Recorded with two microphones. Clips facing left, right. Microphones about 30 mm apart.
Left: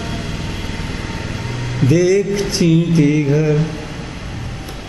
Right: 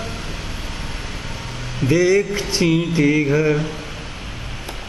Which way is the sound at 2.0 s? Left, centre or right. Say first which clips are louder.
Left 1 dB; centre.